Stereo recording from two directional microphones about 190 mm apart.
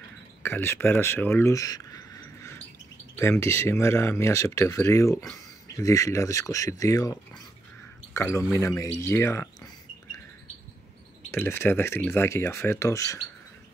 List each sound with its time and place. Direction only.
0.4 s speech: 10° left (ahead or behind)
11.3 s speech: 10° left (ahead or behind)